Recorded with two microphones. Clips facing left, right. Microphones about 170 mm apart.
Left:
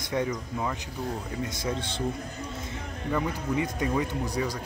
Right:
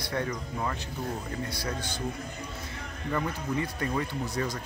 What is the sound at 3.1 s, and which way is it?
Speech, 10° left (ahead or behind).